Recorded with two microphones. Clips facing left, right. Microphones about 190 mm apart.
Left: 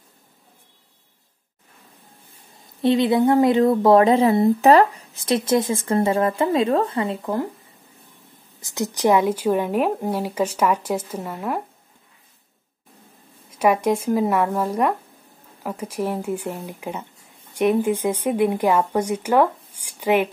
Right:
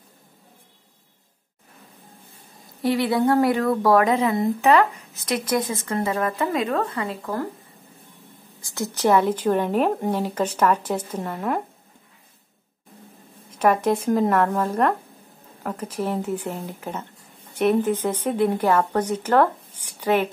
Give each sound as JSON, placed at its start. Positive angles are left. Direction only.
{"t": 2.8, "sound": "speech", "side_deg": 20}
{"t": 8.5, "sound": "speech", "side_deg": 20}
{"t": 13.5, "sound": "speech", "side_deg": 10}